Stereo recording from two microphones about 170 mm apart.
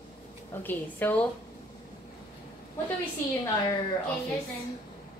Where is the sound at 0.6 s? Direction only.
10° left (ahead or behind).